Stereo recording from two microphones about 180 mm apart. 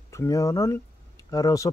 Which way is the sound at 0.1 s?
15° left (ahead or behind).